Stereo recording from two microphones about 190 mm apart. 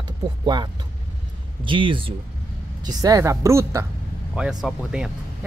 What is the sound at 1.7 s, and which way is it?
Speech, 25° right (ahead or behind).